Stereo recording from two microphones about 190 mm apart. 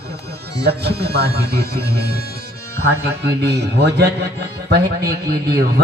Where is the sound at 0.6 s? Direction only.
60° right (ahead or behind).